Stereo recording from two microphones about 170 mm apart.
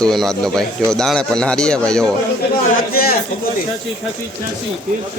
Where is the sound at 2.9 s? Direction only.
60° left (ahead or behind).